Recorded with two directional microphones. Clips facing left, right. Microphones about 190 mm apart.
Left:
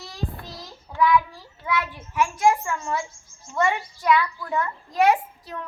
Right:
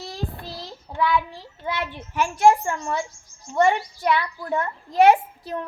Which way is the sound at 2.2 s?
35° right (ahead or behind).